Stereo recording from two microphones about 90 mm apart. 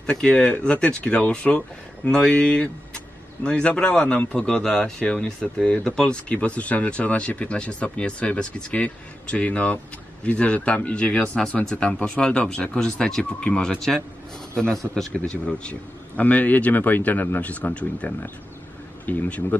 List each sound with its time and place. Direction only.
0.0 s speech: 10° left (ahead or behind)